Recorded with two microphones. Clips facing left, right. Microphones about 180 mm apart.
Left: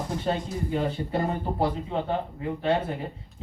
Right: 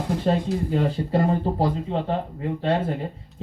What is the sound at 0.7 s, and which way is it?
Speech, 35° right (ahead or behind).